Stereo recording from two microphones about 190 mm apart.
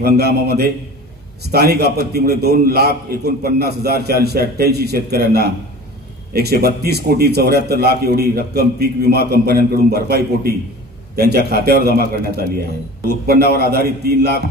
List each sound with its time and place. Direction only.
0.0 s a man's voice: 55° right (ahead or behind)